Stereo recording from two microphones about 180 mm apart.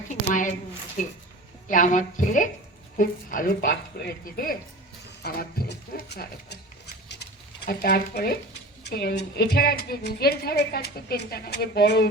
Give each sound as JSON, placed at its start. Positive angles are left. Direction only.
{"t": 0.1, "sound": "a woman's voice", "side_deg": 45}
{"t": 7.1, "sound": "a sound", "side_deg": 70}
{"t": 8.8, "sound": "a woman's voice", "side_deg": 60}